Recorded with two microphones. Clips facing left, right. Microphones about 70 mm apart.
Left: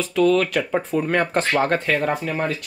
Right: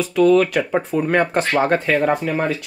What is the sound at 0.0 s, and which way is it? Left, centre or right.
Speech, centre.